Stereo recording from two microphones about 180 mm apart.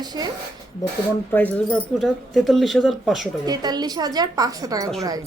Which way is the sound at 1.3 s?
10° left (ahead or behind).